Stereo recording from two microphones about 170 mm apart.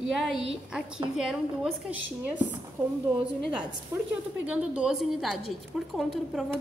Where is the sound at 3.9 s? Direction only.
15° right (ahead or behind).